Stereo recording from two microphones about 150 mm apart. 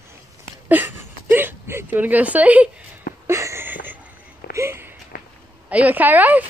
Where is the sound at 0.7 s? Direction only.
15° right (ahead or behind).